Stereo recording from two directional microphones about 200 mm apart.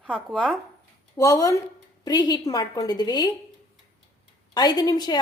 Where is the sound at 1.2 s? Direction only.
15° left (ahead or behind).